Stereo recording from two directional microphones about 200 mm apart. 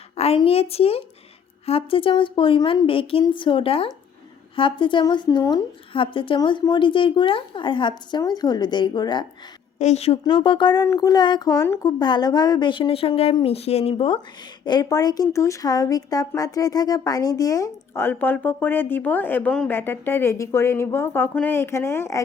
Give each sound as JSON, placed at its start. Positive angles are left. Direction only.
{"t": 0.2, "sound": "a woman's voice", "side_deg": 30}
{"t": 9.7, "sound": "a woman's voice", "side_deg": 35}